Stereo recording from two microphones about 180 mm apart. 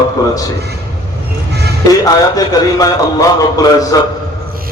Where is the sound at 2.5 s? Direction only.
20° left (ahead or behind).